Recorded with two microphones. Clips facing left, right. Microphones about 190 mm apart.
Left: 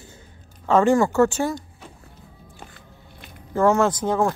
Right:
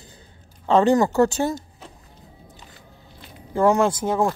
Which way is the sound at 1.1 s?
35° right (ahead or behind).